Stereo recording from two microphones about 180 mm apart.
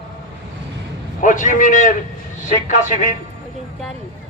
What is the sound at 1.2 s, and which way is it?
Speech, 45° left (ahead or behind).